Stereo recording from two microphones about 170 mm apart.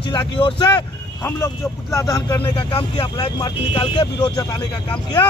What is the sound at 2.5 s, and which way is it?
Speech, 30° left (ahead or behind).